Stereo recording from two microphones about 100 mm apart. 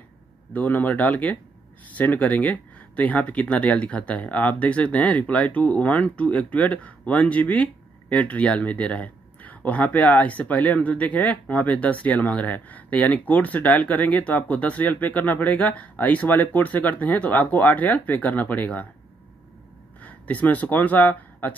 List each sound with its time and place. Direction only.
0.5 s speech: 15° left (ahead or behind)
20.0 s speech: 15° left (ahead or behind)